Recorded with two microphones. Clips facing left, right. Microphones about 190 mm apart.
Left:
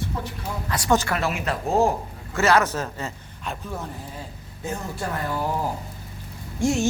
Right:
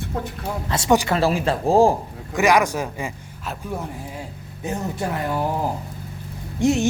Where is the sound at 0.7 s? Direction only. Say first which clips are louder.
Right 3 dB; 25° right (ahead or behind).